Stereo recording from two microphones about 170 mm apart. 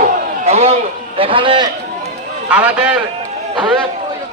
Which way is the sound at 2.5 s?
5° right (ahead or behind).